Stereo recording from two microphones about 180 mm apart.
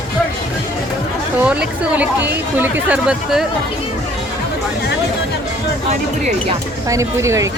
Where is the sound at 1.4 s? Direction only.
5° right (ahead or behind).